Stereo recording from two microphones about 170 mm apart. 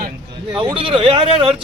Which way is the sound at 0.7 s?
35° right (ahead or behind).